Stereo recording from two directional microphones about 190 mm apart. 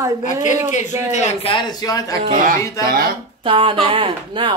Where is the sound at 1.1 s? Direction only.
35° left (ahead or behind); by 2.2 s 20° left (ahead or behind).